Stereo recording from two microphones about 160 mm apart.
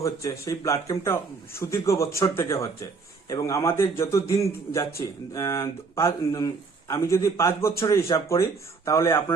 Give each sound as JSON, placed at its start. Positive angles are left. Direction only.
{"t": 0.0, "sound": "a man's voice", "side_deg": 20}